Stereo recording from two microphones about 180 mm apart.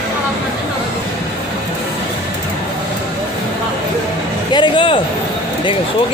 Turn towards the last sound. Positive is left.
turn(degrees=30)  # may be behind; listen again after turning